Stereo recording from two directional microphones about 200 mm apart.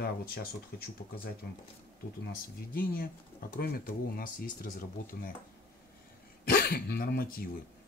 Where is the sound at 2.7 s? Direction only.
45° left (ahead or behind).